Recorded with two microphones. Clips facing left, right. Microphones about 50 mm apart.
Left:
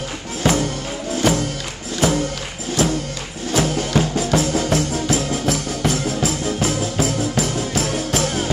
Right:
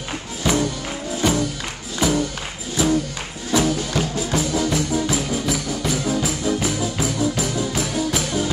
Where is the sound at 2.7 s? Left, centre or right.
Left.